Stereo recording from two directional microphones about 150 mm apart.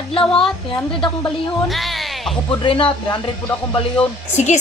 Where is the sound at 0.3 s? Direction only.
5° left (ahead or behind).